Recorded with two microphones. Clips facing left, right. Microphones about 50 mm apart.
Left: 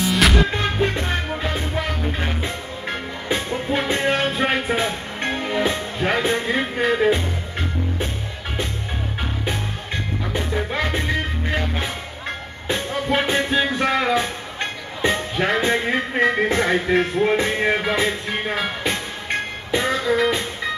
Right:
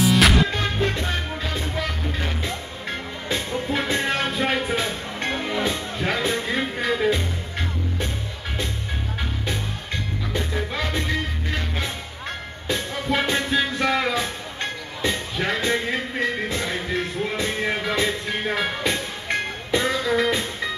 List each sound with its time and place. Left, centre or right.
0.0 s music: centre
0.5 s music: centre
10.3 s music: left
16.3 s music: left
20.1 s music: centre